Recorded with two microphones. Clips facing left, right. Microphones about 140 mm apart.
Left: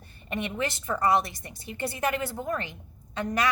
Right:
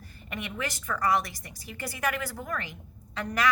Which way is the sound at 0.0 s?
25° left (ahead or behind).